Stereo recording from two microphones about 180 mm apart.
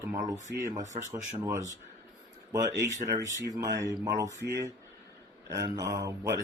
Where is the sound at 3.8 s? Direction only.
20° right (ahead or behind).